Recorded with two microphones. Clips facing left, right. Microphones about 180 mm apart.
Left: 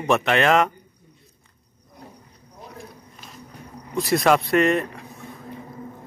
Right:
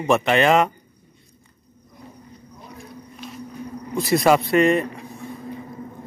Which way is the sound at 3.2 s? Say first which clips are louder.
Right 10 dB; centre (ahead or behind).